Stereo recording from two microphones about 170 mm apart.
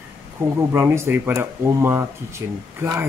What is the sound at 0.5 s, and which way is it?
Speech, 15° right (ahead or behind).